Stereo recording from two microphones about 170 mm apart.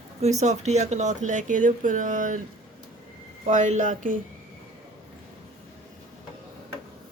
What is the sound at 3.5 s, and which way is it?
Speech, 45° right (ahead or behind).